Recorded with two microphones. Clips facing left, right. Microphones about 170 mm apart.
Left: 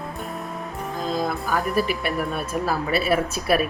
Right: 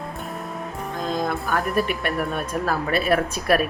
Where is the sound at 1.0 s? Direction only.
5° left (ahead or behind).